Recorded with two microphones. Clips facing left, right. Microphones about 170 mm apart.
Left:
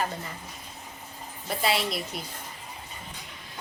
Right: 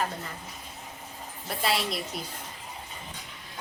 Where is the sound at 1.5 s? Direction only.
Centre (ahead or behind).